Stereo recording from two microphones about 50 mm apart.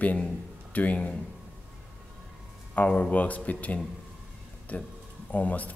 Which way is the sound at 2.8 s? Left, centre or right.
Left.